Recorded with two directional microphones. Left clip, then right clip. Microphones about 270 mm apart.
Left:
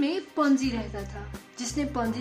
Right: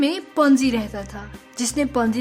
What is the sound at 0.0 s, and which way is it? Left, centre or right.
A woman's voice, right.